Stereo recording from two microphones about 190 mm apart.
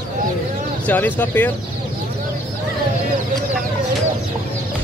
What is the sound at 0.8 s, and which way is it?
Speech, 10° left (ahead or behind).